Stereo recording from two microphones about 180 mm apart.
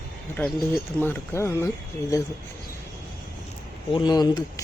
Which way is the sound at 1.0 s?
10° left (ahead or behind).